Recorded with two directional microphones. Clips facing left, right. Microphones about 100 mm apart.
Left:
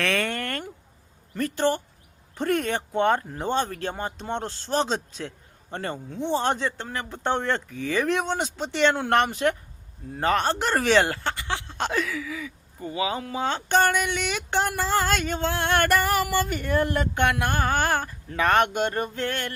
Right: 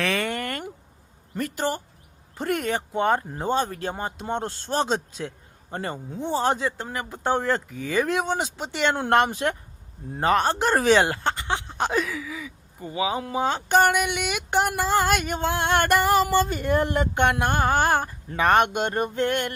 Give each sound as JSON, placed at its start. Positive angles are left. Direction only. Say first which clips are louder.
{"t": 0.0, "sound": "a sound", "louder": "even", "side_deg": -5}
{"t": 1.4, "sound": "speech", "louder": "left 3 dB", "side_deg": -10}
{"t": 3.2, "sound": "speech", "louder": "right 1 dB", "side_deg": -20}